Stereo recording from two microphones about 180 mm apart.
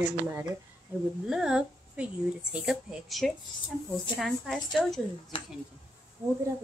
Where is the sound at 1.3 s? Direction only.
5° right (ahead or behind).